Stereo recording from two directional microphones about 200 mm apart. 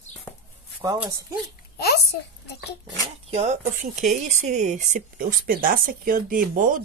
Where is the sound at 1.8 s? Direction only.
55° left (ahead or behind).